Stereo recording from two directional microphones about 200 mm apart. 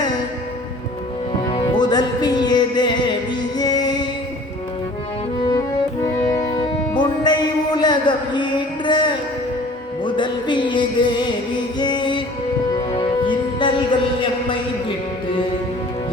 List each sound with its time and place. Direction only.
1.4 s music: 25° left (ahead or behind)
6.2 s music: 15° left (ahead or behind)